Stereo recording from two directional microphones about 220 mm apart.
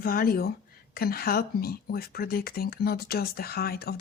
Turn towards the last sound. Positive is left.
turn(degrees=45)  # may be behind; listen again after turning